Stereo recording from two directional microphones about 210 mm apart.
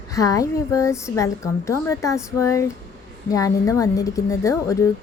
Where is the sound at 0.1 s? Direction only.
15° left (ahead or behind).